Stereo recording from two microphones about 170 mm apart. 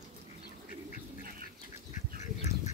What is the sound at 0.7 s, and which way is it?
Duck, 50° left (ahead or behind).